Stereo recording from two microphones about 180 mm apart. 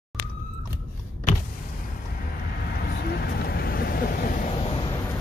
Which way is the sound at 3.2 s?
60° left (ahead or behind).